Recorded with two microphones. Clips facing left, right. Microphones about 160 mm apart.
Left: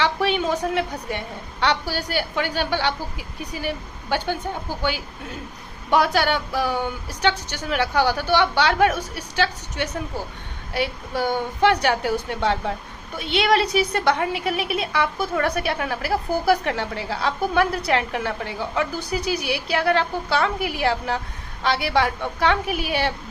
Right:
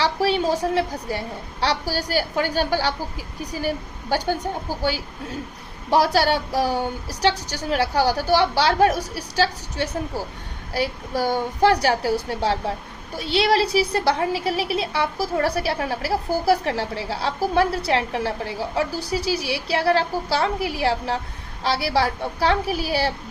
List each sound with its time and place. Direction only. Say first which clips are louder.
0.0 s a woman's voice: right 1 dB; 35° right (ahead or behind)